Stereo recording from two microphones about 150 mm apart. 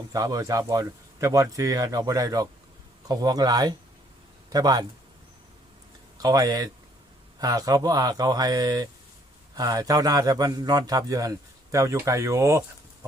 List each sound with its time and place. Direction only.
0.1 s a man's voice: 25° right (ahead or behind)
6.2 s a man's voice: 25° right (ahead or behind)